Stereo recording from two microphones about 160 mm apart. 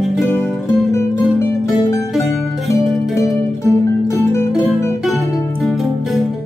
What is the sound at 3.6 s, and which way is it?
Music, 15° left (ahead or behind).